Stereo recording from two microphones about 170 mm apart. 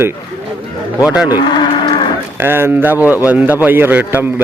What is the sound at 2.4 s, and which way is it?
A man's voice, 15° right (ahead or behind).